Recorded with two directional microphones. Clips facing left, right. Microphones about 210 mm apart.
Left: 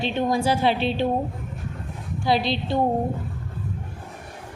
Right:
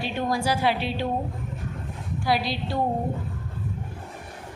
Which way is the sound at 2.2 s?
25° left (ahead or behind).